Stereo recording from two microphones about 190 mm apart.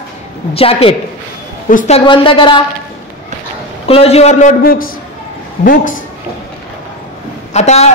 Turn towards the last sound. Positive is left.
turn(degrees=35)  # may be behind; listen again after turning